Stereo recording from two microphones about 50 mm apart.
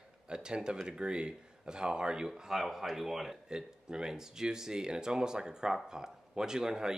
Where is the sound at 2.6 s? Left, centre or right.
Centre.